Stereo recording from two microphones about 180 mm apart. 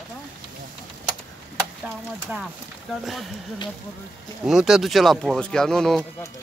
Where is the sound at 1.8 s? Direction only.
10° right (ahead or behind).